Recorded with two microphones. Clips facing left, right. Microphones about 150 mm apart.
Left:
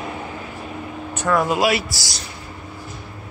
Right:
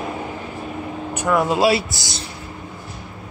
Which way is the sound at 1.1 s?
15° right (ahead or behind).